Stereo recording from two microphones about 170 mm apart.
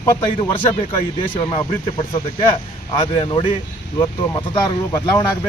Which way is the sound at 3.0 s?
30° left (ahead or behind).